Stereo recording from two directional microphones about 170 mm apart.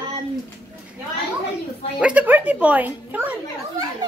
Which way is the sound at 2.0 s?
10° right (ahead or behind).